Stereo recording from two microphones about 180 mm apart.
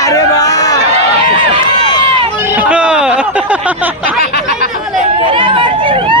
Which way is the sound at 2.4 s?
10° right (ahead or behind).